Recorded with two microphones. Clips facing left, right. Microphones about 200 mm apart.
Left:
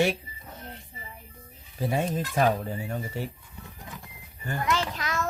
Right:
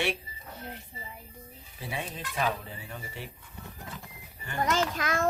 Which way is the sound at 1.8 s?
45° left (ahead or behind).